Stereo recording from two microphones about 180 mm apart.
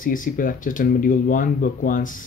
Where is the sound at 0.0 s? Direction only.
50° left (ahead or behind).